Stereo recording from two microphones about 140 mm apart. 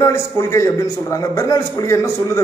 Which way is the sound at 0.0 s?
20° left (ahead or behind).